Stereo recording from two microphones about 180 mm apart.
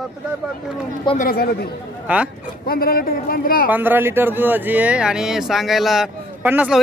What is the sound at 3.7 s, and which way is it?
Speech, 10° right (ahead or behind).